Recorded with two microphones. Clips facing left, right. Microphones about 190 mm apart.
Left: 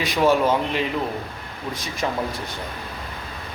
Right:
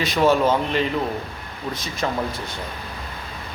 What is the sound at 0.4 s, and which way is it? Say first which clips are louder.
Speech: right 1 dB; 5° left (ahead or behind).